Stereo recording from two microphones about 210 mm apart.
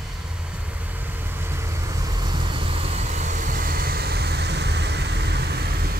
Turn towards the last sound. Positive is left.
turn(degrees=-45)  # may be behind; listen again after turning